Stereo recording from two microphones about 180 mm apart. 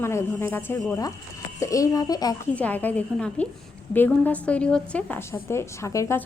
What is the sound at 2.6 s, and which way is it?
A woman's voice, 10° left (ahead or behind).